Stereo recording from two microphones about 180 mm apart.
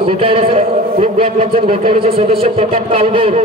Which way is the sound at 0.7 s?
50° right (ahead or behind).